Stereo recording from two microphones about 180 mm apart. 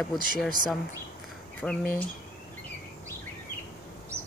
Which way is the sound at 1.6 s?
5° left (ahead or behind).